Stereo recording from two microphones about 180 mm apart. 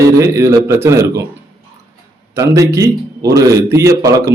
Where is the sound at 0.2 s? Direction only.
15° right (ahead or behind).